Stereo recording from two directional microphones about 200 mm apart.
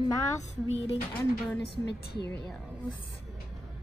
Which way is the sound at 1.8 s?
55° left (ahead or behind).